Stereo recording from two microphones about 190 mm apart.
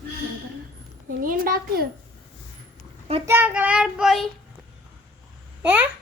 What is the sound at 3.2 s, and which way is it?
A woman's voice, 10° right (ahead or behind).